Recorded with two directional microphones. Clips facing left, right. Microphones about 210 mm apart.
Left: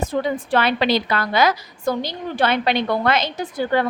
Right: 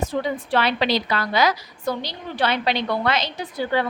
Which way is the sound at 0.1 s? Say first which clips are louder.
Left 4 dB; 50° left (ahead or behind).